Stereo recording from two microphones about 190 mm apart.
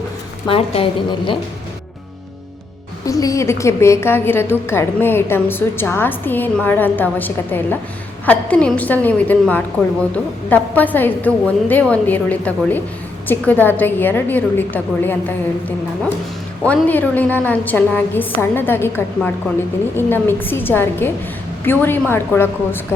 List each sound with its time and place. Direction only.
0.4 s a woman's voice: 30° left (ahead or behind)
3.1 s a woman's voice: 15° left (ahead or behind)
16.6 s a woman's voice: 10° left (ahead or behind)